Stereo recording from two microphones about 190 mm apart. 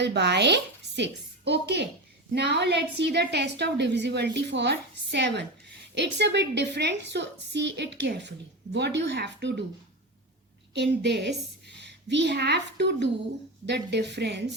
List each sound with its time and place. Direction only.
0.0 s a woman's voice: 65° right (ahead or behind)
10.8 s a woman's voice: 65° right (ahead or behind)